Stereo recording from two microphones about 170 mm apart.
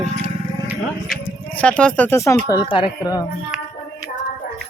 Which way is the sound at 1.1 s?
5° left (ahead or behind).